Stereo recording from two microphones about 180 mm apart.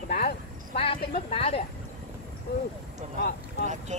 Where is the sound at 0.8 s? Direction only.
30° left (ahead or behind).